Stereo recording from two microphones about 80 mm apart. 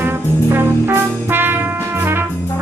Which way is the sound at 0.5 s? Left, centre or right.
Right.